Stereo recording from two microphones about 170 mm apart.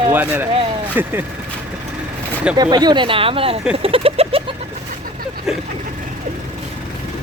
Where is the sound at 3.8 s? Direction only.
35° right (ahead or behind).